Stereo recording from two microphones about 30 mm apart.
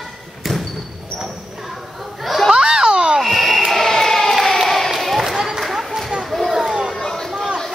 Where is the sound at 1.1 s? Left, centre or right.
Centre.